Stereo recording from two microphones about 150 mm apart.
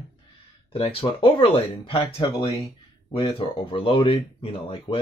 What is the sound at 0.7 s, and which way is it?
Speech, 40° left (ahead or behind).